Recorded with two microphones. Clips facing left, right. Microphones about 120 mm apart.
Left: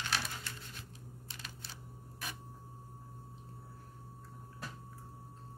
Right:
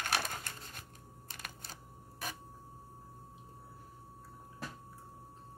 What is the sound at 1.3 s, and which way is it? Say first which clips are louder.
Computer keyboard: right 4 dB; 50° right (ahead or behind).